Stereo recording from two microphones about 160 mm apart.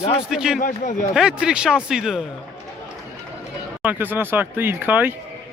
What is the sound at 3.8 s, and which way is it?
Speech, 10° right (ahead or behind).